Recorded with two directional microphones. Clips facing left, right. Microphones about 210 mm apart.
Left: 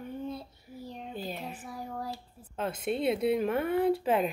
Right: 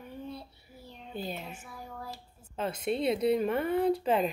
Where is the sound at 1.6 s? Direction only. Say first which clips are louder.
Left 5 dB; 40° left (ahead or behind).